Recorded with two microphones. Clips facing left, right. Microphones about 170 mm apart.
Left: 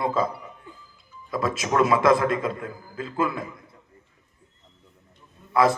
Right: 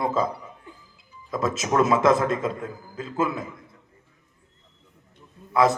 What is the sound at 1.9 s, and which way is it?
Speech, 20° right (ahead or behind).